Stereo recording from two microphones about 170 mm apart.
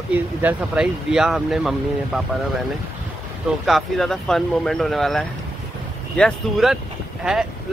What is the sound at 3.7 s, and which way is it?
Speech, centre (ahead or behind).